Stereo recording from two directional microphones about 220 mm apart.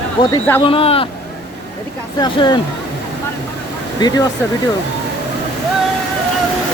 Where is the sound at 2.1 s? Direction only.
20° left (ahead or behind).